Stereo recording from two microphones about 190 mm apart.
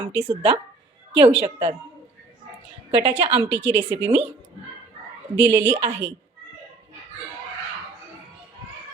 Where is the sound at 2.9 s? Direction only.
30° right (ahead or behind).